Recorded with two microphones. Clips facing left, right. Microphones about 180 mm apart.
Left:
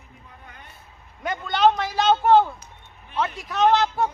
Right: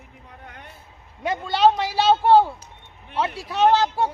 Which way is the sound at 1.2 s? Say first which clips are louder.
Right 1 dB; 30° right (ahead or behind).